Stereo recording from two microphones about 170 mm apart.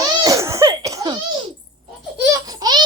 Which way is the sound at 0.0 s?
20° right (ahead or behind).